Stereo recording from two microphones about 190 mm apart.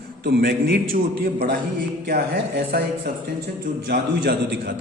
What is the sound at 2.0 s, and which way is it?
Speech, 55° right (ahead or behind).